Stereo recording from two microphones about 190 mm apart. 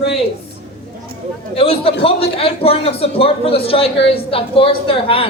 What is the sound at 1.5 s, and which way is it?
A man's voice, 30° left (ahead or behind).